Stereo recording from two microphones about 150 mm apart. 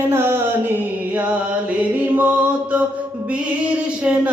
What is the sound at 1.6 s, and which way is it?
Mantra, 10° right (ahead or behind).